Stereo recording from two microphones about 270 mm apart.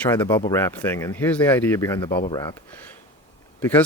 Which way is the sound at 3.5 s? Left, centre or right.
Centre.